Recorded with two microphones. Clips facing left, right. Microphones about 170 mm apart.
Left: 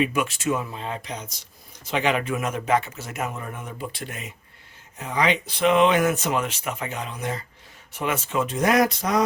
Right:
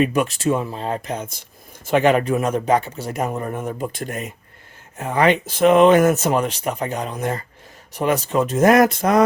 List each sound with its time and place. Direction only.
0.0 s speech: 40° right (ahead or behind)